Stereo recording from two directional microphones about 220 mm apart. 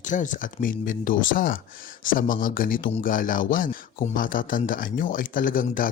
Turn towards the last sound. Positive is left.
turn(degrees=40)  # may be behind; listen again after turning